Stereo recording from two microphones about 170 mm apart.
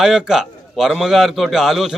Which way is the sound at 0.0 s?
5° right (ahead or behind).